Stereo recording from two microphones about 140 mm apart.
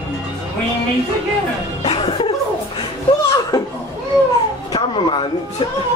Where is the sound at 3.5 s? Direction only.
25° left (ahead or behind).